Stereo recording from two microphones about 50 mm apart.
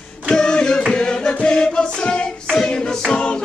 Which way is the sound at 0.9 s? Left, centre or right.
Centre.